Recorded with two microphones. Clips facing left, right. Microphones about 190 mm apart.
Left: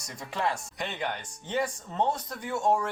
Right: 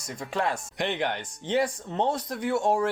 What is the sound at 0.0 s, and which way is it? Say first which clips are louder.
Speech: right 3 dB; 55° right (ahead or behind).